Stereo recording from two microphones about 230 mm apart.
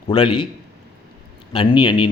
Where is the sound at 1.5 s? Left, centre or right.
Left.